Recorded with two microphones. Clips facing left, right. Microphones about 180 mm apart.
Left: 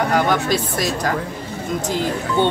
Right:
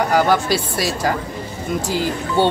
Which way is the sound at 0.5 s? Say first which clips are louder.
Even; 5° right (ahead or behind).